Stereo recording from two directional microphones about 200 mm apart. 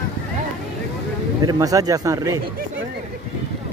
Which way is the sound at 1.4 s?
15° right (ahead or behind).